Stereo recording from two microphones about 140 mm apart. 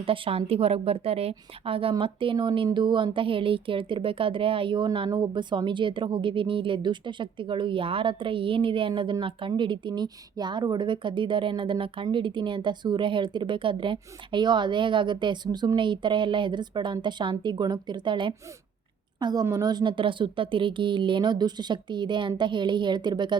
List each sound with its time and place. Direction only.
0.0 s a woman's voice: 40° right (ahead or behind)